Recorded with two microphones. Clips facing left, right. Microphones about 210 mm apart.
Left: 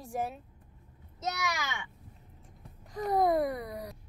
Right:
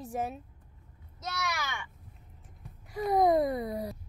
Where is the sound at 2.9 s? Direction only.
15° right (ahead or behind).